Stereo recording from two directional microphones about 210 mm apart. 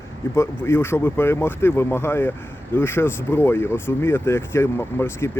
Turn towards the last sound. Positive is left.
turn(degrees=10)  # may be behind; listen again after turning